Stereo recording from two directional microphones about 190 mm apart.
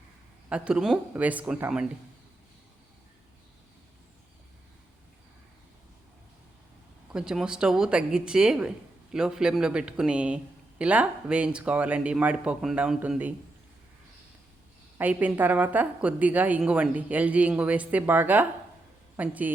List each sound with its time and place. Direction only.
0.5 s speech: 5° right (ahead or behind)
7.1 s speech: 5° right (ahead or behind)
14.9 s a woman's voice: 10° right (ahead or behind)